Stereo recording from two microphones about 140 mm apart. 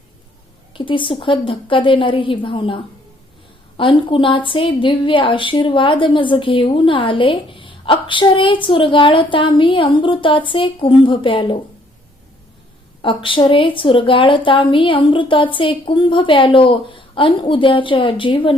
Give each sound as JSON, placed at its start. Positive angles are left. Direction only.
{"t": 0.7, "sound": "a woman's voice", "side_deg": 35}
{"t": 13.0, "sound": "a woman's voice", "side_deg": 40}